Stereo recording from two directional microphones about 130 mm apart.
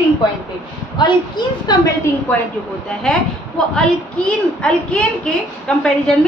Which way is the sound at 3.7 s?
5° left (ahead or behind).